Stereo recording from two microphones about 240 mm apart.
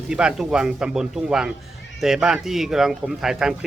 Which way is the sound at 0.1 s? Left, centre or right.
Centre.